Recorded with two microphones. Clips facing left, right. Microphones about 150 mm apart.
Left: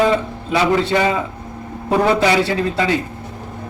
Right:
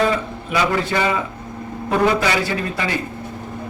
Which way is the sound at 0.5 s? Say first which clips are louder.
Left 4 dB; 25° left (ahead or behind).